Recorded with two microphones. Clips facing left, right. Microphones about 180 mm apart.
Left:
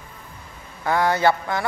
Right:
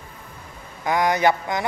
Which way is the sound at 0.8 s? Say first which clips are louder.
Even; 15° right (ahead or behind).